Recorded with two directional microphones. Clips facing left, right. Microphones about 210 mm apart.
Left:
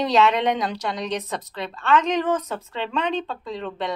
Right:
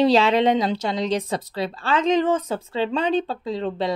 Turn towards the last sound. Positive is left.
turn(degrees=-30)  # may be behind; listen again after turning